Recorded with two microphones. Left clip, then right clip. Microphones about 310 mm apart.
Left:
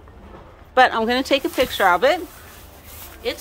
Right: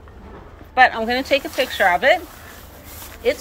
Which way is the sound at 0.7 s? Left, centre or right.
Left.